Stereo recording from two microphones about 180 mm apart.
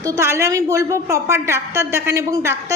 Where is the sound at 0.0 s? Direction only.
15° right (ahead or behind).